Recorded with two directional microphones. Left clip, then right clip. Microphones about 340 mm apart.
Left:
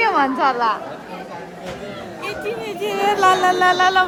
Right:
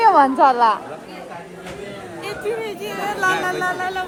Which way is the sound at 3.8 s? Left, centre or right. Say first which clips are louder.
Left 9 dB; left.